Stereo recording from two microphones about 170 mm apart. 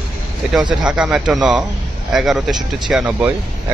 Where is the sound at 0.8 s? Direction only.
5° right (ahead or behind).